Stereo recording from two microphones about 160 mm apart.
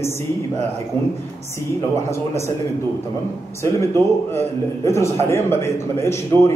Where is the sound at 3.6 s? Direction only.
15° left (ahead or behind).